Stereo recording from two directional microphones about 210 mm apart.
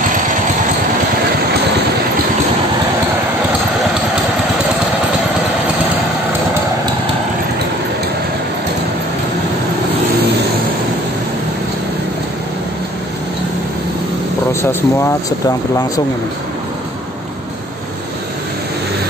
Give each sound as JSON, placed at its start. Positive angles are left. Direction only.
{"t": 14.5, "sound": "speech", "side_deg": 10}